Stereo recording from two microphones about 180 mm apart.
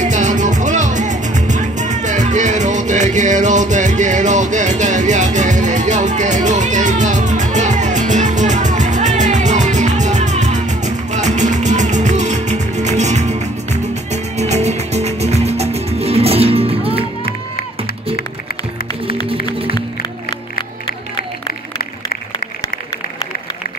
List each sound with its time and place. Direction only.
0.0 s music: 45° right (ahead or behind)